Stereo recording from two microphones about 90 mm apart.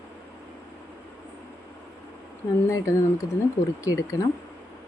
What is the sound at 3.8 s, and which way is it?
Speech, 35° left (ahead or behind).